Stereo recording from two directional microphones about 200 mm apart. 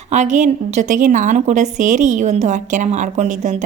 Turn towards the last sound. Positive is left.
turn(degrees=-35)  # may be behind; listen again after turning